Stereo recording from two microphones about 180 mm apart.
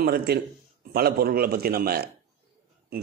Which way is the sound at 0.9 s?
60° right (ahead or behind).